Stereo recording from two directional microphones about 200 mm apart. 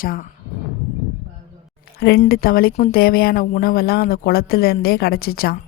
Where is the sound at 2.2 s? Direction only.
50° left (ahead or behind).